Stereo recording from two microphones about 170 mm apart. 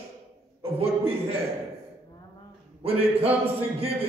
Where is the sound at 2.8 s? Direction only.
35° right (ahead or behind).